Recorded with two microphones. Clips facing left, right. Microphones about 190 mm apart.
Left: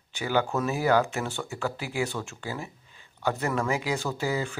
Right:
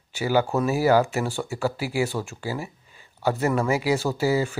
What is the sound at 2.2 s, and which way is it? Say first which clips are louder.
Speech: right 5 dB; 5° right (ahead or behind).